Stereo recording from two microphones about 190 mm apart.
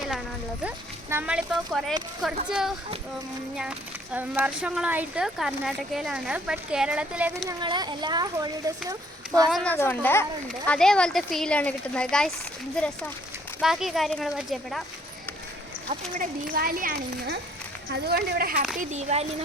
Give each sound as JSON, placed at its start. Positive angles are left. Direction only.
{"t": 1.1, "sound": "speech", "side_deg": -5}
{"t": 7.6, "sound": "speech", "side_deg": -25}
{"t": 9.7, "sound": "a woman's voice", "side_deg": 10}
{"t": 15.9, "sound": "speech", "side_deg": -45}
{"t": 18.8, "sound": "speech", "side_deg": -40}